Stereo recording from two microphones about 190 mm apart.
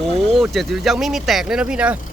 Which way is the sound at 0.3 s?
Centre (ahead or behind).